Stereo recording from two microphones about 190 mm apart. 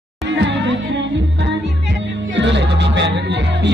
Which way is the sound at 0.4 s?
65° right (ahead or behind).